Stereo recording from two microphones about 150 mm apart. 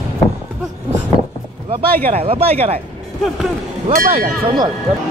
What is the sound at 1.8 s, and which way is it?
Speech, 90° right.